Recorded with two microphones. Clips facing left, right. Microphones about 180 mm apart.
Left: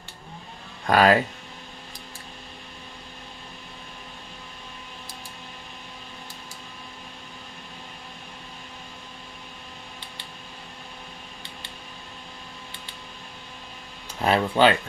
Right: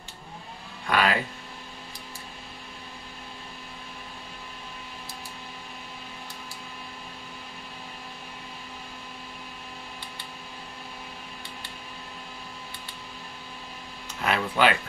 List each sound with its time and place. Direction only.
0.8 s speech: 40° left (ahead or behind)
14.2 s speech: 30° left (ahead or behind)